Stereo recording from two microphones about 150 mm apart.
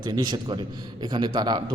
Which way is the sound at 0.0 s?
30° right (ahead or behind).